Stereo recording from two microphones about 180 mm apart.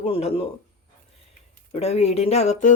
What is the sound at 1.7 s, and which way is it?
Speech, 35° left (ahead or behind).